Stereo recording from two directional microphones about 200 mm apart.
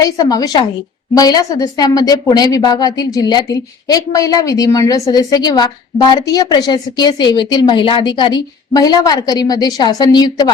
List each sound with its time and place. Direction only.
0.0 s a woman's voice: 20° left (ahead or behind)